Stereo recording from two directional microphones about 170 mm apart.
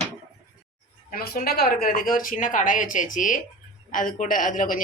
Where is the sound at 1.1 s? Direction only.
60° left (ahead or behind).